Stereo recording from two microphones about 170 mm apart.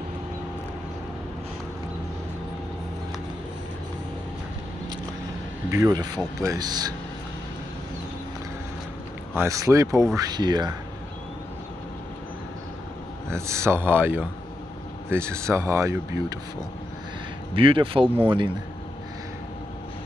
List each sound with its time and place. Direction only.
5.7 s speech: 20° right (ahead or behind)
9.3 s speech: 15° right (ahead or behind)
13.3 s speech: 15° right (ahead or behind)
17.6 s speech: 30° right (ahead or behind)